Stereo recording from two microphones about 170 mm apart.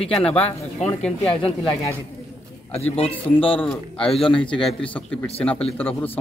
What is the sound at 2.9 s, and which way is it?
Speech, 35° left (ahead or behind).